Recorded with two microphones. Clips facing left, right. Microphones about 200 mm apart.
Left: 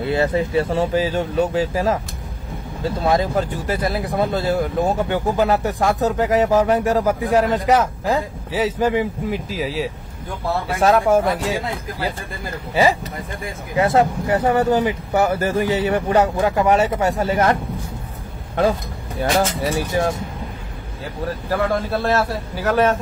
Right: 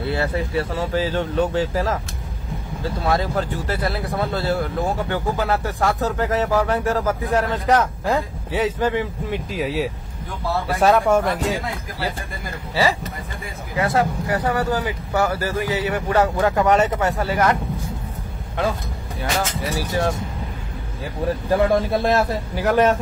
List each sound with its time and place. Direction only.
0.0 s speech: 20° left (ahead or behind)
3.1 s speech: 15° left (ahead or behind)
8.7 s speech: 10° left (ahead or behind)
9.5 s speech: centre (ahead or behind)
13.7 s speech: 25° left (ahead or behind)
16.2 s speech: 10° left (ahead or behind)
17.3 s speech: 30° left (ahead or behind)
21.5 s a man's voice: 15° right (ahead or behind)